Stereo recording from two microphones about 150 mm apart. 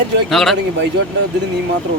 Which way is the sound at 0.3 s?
Centre (ahead or behind).